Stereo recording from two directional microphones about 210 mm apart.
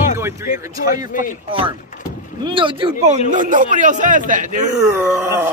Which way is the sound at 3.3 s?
40° right (ahead or behind).